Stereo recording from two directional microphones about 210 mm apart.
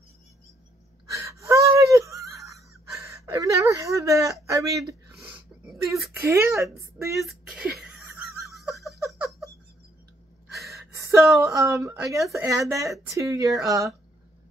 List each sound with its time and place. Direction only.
1.1 s gasp: 15° right (ahead or behind)
5.1 s a sound: 10° right (ahead or behind)
5.9 s a woman's voice: centre (ahead or behind)
6.2 s speech: 15° right (ahead or behind)
7.2 s a sound: 5° right (ahead or behind)
8.6 s giggle: centre (ahead or behind)
10.7 s gasp: 15° right (ahead or behind)
11.3 s speech: 15° right (ahead or behind)